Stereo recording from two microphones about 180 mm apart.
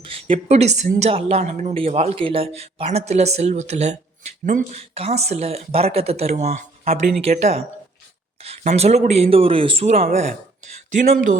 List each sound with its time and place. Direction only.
0.0 s a woman's voice: 30° right (ahead or behind)
8.7 s a woman's voice: 35° right (ahead or behind)